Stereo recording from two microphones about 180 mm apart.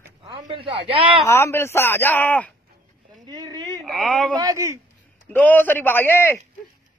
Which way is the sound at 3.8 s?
Centre (ahead or behind).